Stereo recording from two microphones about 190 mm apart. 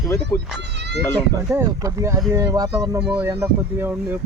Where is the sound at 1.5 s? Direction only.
15° right (ahead or behind).